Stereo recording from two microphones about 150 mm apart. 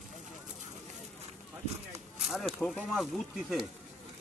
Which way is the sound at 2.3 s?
Centre (ahead or behind).